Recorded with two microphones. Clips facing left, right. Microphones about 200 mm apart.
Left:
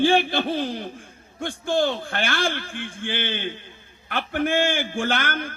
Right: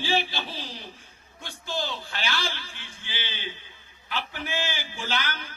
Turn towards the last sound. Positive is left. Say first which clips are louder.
# left 7 dB
turn(degrees=55)  # may be behind; listen again after turning